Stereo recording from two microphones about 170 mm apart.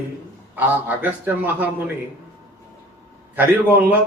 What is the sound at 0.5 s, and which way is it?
A man's voice, 10° right (ahead or behind).